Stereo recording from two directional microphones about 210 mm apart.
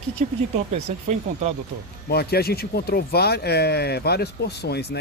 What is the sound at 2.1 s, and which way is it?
Speech, 50° left (ahead or behind).